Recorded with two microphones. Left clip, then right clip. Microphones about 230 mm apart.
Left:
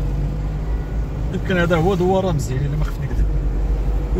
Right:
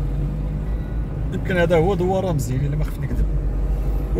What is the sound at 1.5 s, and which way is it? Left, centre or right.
Speech, right.